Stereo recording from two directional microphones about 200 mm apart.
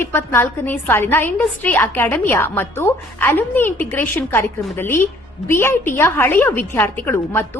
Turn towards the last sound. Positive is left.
turn(degrees=10)  # may be behind; listen again after turning